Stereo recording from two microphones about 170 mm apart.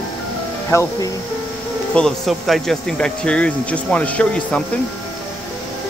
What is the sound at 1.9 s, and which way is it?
Speech, centre (ahead or behind).